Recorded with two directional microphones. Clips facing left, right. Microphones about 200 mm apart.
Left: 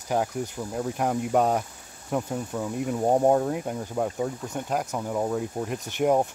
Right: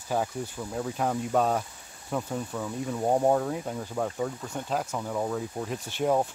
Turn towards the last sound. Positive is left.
turn(degrees=15)  # may be behind; listen again after turning